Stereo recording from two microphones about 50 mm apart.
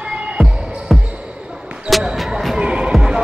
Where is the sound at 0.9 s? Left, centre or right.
Centre.